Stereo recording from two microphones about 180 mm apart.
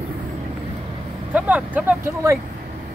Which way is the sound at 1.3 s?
10° right (ahead or behind).